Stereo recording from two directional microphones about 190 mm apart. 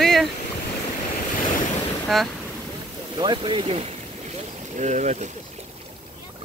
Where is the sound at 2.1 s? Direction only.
Centre (ahead or behind).